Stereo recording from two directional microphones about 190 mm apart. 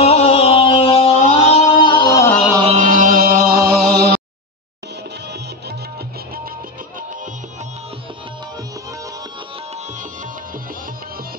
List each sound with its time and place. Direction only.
0.0 s music: 35° left (ahead or behind)
2.6 s chant: 35° right (ahead or behind); by 4.2 s 55° right (ahead or behind)